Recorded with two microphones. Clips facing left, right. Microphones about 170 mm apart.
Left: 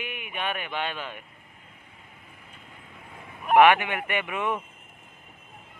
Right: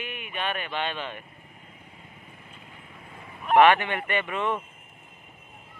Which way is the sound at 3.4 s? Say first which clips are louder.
Even; 10° left (ahead or behind).